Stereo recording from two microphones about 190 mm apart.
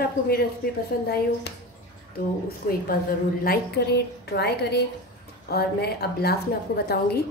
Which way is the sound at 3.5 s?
60° left (ahead or behind).